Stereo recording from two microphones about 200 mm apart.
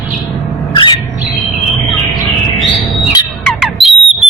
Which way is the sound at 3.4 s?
Centre (ahead or behind).